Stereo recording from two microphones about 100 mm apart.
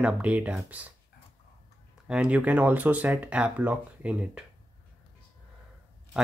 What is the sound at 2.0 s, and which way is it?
Speech, 10° right (ahead or behind).